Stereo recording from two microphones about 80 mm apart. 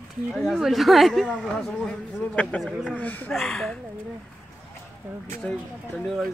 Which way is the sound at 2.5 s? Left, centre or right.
Centre.